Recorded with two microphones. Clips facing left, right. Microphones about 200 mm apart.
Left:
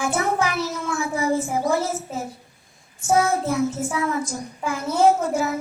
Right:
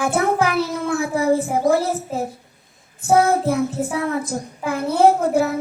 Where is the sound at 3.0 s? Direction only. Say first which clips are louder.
Right 4 dB; 60° right (ahead or behind).